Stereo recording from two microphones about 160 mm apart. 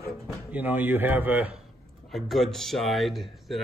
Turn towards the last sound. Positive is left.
turn(degrees=0)  # may be behind; listen again after turning